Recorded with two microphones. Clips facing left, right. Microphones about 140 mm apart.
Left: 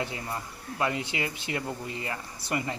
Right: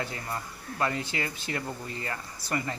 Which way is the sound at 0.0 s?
20° left (ahead or behind).